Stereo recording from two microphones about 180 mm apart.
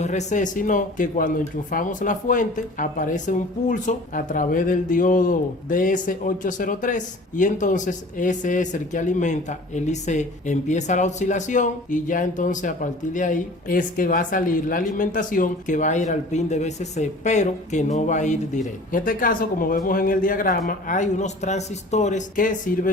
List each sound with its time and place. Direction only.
0.0 s speech: 40° left (ahead or behind)